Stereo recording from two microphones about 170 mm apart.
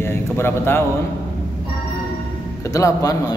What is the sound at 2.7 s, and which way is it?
Speech, 20° left (ahead or behind).